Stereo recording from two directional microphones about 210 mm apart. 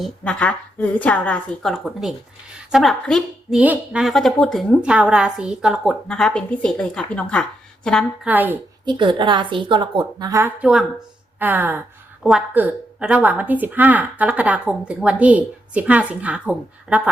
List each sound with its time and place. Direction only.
0.0 s speech: 5° left (ahead or behind)
8.3 s speech: 10° right (ahead or behind)
8.8 s a woman's voice: 20° right (ahead or behind); by 17.0 s 5° right (ahead or behind)